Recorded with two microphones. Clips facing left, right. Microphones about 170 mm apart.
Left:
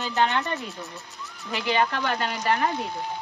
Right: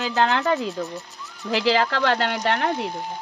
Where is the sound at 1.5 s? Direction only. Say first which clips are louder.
Right 4 dB; 90° right; by 2.7 s 70° right (ahead or behind).